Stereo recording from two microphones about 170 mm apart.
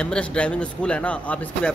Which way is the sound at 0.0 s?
5° left (ahead or behind).